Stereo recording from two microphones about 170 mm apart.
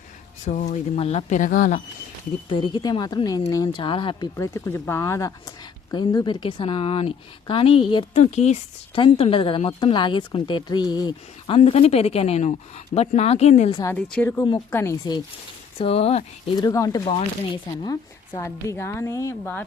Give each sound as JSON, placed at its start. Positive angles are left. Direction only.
{"t": 0.4, "sound": "speech", "side_deg": 45}
{"t": 2.5, "sound": "speech", "side_deg": 30}
{"t": 8.2, "sound": "speech", "side_deg": 40}
{"t": 13.8, "sound": "a woman's voice", "side_deg": 10}
{"t": 15.8, "sound": "speech", "side_deg": 35}
{"t": 16.6, "sound": "speech", "side_deg": 20}
{"t": 17.1, "sound": "a woman's voice", "side_deg": 30}